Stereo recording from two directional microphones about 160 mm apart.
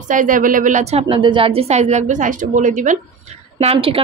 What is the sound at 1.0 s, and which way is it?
A woman's voice, 30° right (ahead or behind).